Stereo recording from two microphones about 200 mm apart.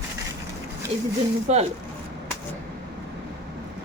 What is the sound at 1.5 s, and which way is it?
Speech, 35° right (ahead or behind).